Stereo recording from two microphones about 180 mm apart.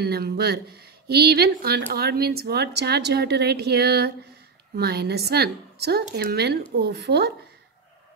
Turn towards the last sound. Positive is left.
turn(degrees=-65)  # may be behind; listen again after turning